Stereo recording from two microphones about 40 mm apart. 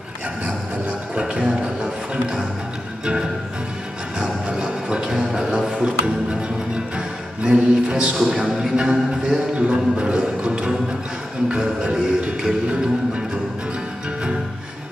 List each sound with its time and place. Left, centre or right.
1.1 s music: right
4.5 s music: right
5.7 s music: right
7.4 s music: right
8.2 s a man's voice: centre
8.7 s music: centre